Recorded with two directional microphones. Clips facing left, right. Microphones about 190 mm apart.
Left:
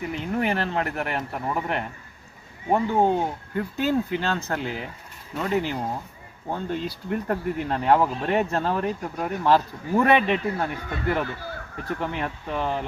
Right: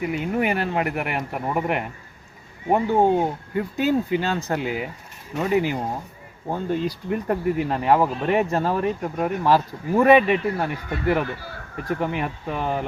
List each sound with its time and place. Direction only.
0.0 s speech: 10° right (ahead or behind)
6.8 s speech: 10° right (ahead or behind)